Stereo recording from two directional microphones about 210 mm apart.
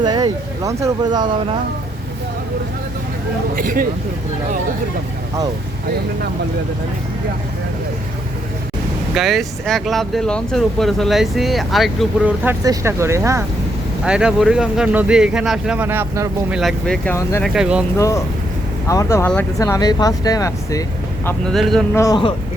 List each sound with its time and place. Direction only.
0.0 s speech: 20° right (ahead or behind)
3.5 s speech: 40° right (ahead or behind)
9.1 s speech: centre (ahead or behind)
16.6 s speech: centre (ahead or behind)
17.9 s speech: 15° left (ahead or behind)
21.2 s speech: centre (ahead or behind)
21.9 s speech: 15° left (ahead or behind)